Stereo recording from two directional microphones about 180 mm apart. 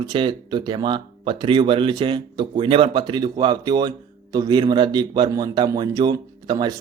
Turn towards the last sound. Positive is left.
turn(degrees=-20)  # may be behind; listen again after turning